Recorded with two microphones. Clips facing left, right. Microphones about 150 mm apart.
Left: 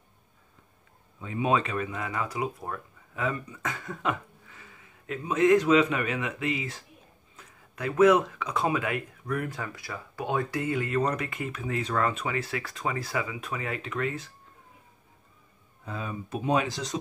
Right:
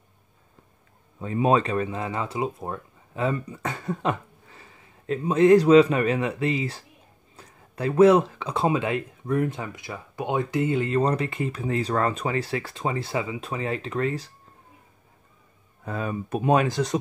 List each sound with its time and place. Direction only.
1.2 s speech: 40° right (ahead or behind)
15.8 s speech: 55° right (ahead or behind)